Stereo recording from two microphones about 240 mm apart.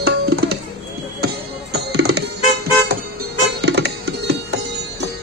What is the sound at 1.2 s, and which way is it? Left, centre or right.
Music, right.